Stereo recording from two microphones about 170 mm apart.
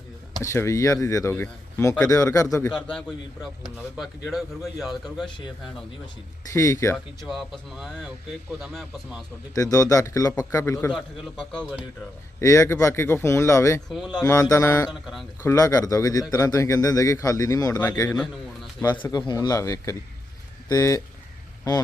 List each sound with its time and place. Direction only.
0.4 s speech: 15° left (ahead or behind)
2.6 s speech: 5° left (ahead or behind)
6.5 s speech: 20° left (ahead or behind)
6.9 s speech: centre (ahead or behind)
9.6 s a man's voice: 20° left (ahead or behind); by 11.9 s 5° left (ahead or behind)
12.4 s speech: 15° left (ahead or behind)
13.9 s speech: 5° left (ahead or behind)
14.3 s a man's voice: 20° left (ahead or behind)